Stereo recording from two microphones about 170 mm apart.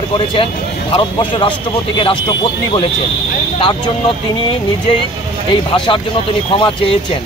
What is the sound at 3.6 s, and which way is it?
Speech, 30° left (ahead or behind).